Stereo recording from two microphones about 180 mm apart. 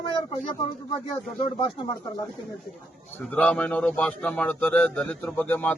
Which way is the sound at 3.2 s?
5° left (ahead or behind).